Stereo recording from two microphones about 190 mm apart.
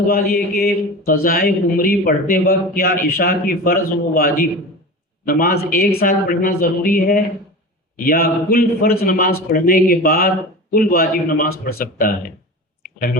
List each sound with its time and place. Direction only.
0.1 s speech: 50° left (ahead or behind)